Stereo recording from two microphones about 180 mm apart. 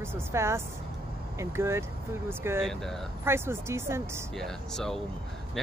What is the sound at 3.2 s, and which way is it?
Speech, 15° right (ahead or behind).